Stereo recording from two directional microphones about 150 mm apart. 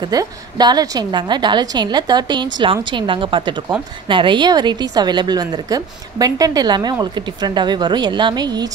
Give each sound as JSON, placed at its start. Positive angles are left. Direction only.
{"t": 0.0, "sound": "a woman's voice", "side_deg": -25}